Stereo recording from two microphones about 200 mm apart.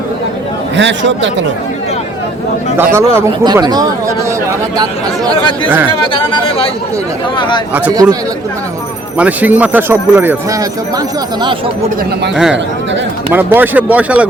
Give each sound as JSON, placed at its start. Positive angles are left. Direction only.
{"t": 0.8, "sound": "speech", "side_deg": -65}
{"t": 2.7, "sound": "speech", "side_deg": -15}
{"t": 6.1, "sound": "speech", "side_deg": 25}
{"t": 7.7, "sound": "speech", "side_deg": -10}
{"t": 9.1, "sound": "speech", "side_deg": -5}
{"t": 13.3, "sound": "speech", "side_deg": -10}